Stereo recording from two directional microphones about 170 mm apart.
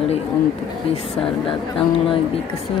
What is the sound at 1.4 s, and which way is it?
Speech, 30° left (ahead or behind).